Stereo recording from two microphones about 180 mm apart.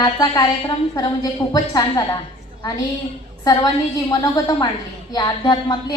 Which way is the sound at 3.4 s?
20° left (ahead or behind).